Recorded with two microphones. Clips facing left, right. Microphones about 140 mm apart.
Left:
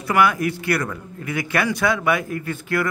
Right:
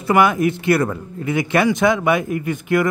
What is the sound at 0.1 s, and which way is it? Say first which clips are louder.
Speech: right 4 dB; 20° right (ahead or behind).